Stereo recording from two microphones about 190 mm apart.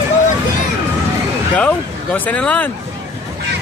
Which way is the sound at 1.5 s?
5° left (ahead or behind).